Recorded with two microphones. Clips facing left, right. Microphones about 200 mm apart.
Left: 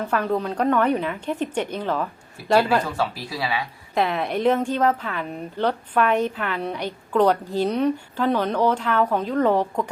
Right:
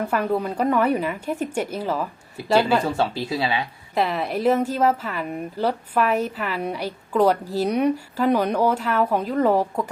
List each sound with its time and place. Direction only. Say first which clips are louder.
0.0 s a woman's voice: right 1 dB; 10° right (ahead or behind)
3.0 s speech: right 3 dB; 25° right (ahead or behind)
3.9 s a woman's voice: even; centre (ahead or behind)